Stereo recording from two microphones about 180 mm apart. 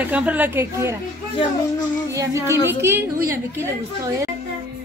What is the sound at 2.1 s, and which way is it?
Speech, 15° right (ahead or behind).